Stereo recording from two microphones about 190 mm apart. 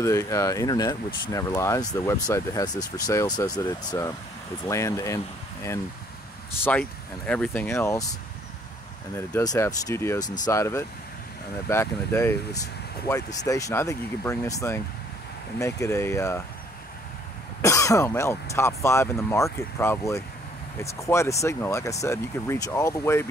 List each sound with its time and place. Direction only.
0.0 s speech: 15° left (ahead or behind)
7.2 s speech: 5° left (ahead or behind)
17.6 s speech: 15° left (ahead or behind)